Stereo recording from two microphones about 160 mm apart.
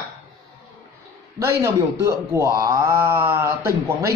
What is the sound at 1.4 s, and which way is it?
Speech, 15° right (ahead or behind).